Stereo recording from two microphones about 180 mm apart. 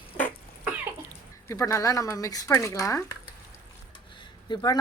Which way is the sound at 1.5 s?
15° left (ahead or behind).